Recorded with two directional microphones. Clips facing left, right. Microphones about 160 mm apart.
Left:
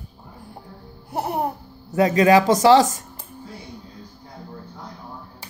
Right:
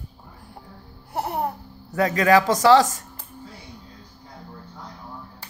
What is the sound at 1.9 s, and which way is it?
Speech, 20° left (ahead or behind).